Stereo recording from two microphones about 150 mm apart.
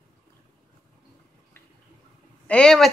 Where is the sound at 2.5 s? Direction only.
5° left (ahead or behind).